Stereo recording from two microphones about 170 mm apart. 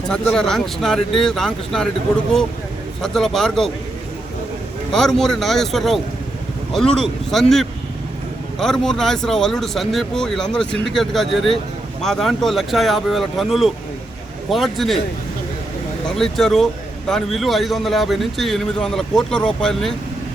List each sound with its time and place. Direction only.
0.1 s a man's voice: 5° left (ahead or behind)
3.0 s a man's voice: centre (ahead or behind)
4.9 s a man's voice: centre (ahead or behind)
8.5 s a man's voice: 5° left (ahead or behind)
16.0 s a man's voice: centre (ahead or behind)